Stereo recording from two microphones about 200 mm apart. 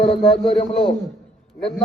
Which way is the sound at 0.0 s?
30° left (ahead or behind).